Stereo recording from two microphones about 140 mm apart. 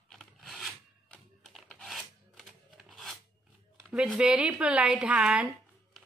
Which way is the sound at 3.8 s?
5° right (ahead or behind).